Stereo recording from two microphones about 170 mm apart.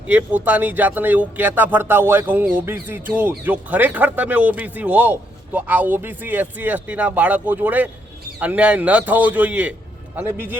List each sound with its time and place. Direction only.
0.1 s speech: 10° right (ahead or behind)